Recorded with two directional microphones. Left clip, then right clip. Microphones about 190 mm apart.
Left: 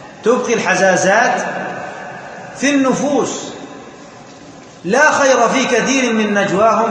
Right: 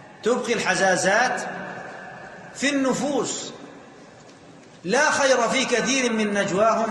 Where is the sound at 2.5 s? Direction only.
45° right (ahead or behind).